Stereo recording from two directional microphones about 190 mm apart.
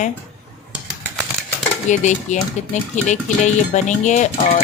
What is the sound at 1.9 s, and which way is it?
Speech, 40° left (ahead or behind).